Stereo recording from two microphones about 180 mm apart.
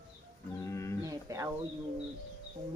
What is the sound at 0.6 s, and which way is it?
Speech, 15° left (ahead or behind).